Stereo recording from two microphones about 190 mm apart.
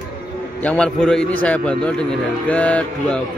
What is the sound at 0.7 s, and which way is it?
A man's voice, 5° left (ahead or behind).